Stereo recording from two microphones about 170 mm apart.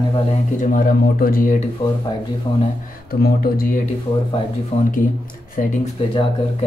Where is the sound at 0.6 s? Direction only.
55° left (ahead or behind).